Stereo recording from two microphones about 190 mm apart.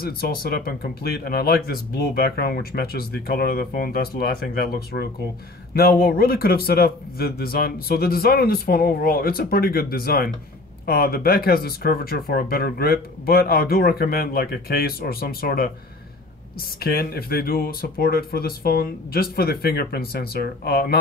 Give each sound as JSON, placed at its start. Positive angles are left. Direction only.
{"t": 0.0, "sound": "speech", "side_deg": 50}
{"t": 16.8, "sound": "speech", "side_deg": 55}